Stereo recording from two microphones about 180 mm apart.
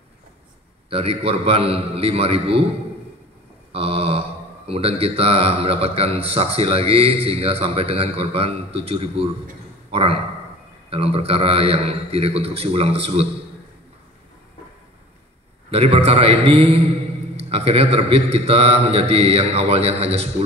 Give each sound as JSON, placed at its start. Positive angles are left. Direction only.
{"t": 0.8, "sound": "speech", "side_deg": -35}
{"t": 3.7, "sound": "a man's voice", "side_deg": -35}
{"t": 15.7, "sound": "speech", "side_deg": -35}